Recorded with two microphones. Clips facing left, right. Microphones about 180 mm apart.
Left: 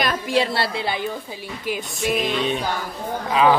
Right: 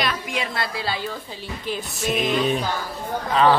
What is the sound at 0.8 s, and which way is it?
Speech, 20° left (ahead or behind).